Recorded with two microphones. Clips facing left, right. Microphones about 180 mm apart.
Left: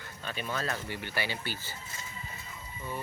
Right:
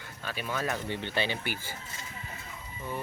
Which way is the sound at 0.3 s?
10° right (ahead or behind).